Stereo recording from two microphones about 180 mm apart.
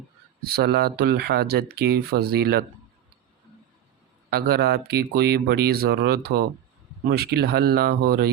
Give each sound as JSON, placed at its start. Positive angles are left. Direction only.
{"t": 0.4, "sound": "speech", "side_deg": -60}
{"t": 4.3, "sound": "speech", "side_deg": -60}